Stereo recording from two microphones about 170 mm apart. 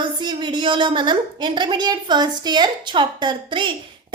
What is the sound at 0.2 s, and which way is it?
A woman's voice, 25° right (ahead or behind).